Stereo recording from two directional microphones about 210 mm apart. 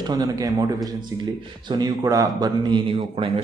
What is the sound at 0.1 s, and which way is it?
Speech, 15° right (ahead or behind).